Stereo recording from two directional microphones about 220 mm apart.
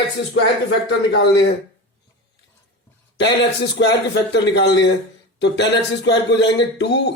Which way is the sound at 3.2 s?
50° left (ahead or behind).